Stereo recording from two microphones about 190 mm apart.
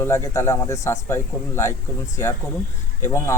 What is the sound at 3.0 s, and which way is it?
Speech, 15° left (ahead or behind).